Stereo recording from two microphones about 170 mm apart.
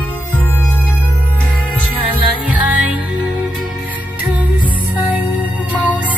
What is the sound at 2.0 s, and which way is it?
Music, 10° right (ahead or behind).